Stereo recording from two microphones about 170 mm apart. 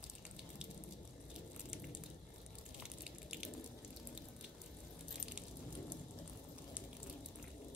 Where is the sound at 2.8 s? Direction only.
5° right (ahead or behind).